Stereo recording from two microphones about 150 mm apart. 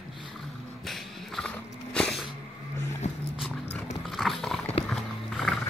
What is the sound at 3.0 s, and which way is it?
Music, 50° left (ahead or behind).